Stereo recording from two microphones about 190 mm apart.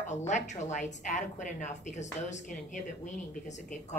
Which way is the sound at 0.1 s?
40° left (ahead or behind).